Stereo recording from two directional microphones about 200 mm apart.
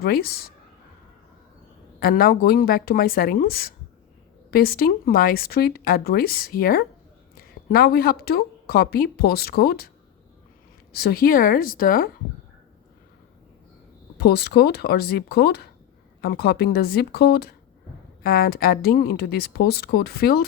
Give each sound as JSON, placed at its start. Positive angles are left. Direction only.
{"t": 0.0, "sound": "speech", "side_deg": 50}
{"t": 2.0, "sound": "speech", "side_deg": 45}
{"t": 10.9, "sound": "speech", "side_deg": 50}
{"t": 14.2, "sound": "speech", "side_deg": 55}